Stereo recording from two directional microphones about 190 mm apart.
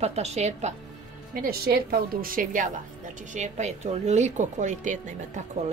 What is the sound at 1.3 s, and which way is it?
A woman's voice, 50° right (ahead or behind).